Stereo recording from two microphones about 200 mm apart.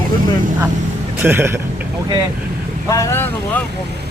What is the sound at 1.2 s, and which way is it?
Speech, 10° right (ahead or behind).